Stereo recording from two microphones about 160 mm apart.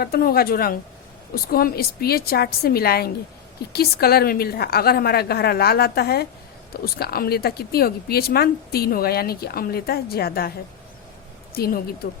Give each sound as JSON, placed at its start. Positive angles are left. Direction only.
{"t": 0.0, "sound": "speech", "side_deg": 70}
{"t": 11.5, "sound": "speech", "side_deg": 70}